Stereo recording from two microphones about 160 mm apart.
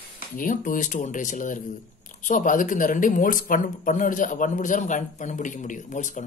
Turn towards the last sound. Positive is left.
turn(degrees=50)  # may be behind; listen again after turning